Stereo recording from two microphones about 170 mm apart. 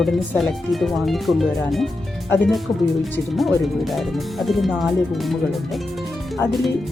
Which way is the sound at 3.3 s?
Centre (ahead or behind).